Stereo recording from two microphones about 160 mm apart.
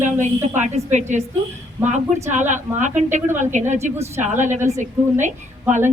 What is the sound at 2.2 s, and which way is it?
Speech, 50° right (ahead or behind).